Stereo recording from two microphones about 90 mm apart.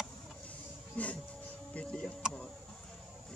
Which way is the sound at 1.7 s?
10° left (ahead or behind).